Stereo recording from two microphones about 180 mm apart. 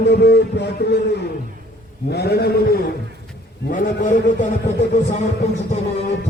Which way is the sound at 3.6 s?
50° left (ahead or behind).